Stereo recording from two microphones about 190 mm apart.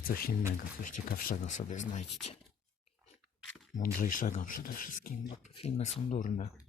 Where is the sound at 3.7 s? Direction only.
45° left (ahead or behind).